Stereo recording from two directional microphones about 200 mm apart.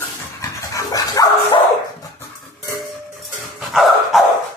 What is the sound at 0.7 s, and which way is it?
Dog, 15° left (ahead or behind).